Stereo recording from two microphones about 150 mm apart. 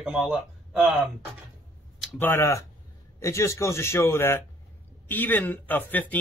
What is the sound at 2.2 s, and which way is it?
A man's voice, 15° left (ahead or behind).